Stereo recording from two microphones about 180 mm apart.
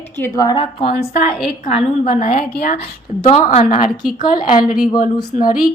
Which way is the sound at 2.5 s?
60° left (ahead or behind).